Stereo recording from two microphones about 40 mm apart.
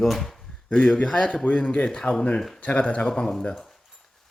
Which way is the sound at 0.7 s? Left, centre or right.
Left.